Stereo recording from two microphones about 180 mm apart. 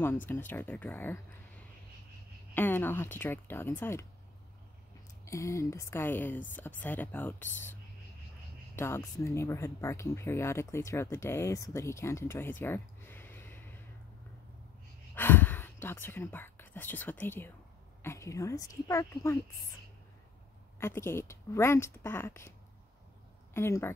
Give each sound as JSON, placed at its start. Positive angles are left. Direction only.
{"t": 0.0, "sound": "speech", "side_deg": 10}
{"t": 2.5, "sound": "speech", "side_deg": 10}
{"t": 5.2, "sound": "speech", "side_deg": 15}
{"t": 8.7, "sound": "speech", "side_deg": 15}
{"t": 15.1, "sound": "speech", "side_deg": 10}
{"t": 20.8, "sound": "speech", "side_deg": 15}
{"t": 23.5, "sound": "speech", "side_deg": 15}